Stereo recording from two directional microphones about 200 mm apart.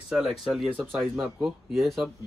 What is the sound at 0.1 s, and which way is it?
Speech, centre (ahead or behind).